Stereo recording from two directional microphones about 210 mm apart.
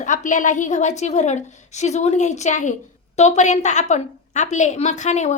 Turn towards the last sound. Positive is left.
turn(degrees=35)  # may be behind; listen again after turning